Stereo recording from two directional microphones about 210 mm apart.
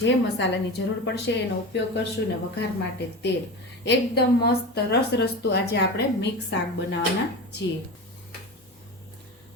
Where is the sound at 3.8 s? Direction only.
50° left (ahead or behind).